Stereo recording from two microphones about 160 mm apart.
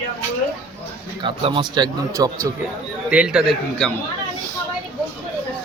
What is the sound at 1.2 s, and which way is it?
Speech, 30° right (ahead or behind).